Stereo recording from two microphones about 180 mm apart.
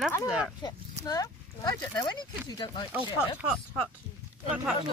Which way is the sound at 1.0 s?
20° left (ahead or behind).